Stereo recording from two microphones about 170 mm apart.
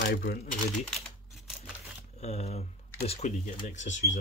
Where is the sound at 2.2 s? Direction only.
40° left (ahead or behind).